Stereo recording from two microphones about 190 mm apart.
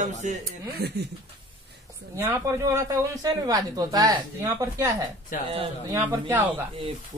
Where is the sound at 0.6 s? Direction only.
55° right (ahead or behind).